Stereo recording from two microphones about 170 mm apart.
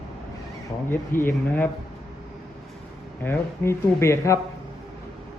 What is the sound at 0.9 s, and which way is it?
Speech, 15° left (ahead or behind).